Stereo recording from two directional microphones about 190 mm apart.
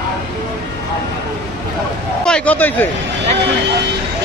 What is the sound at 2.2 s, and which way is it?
Speech, 5° left (ahead or behind).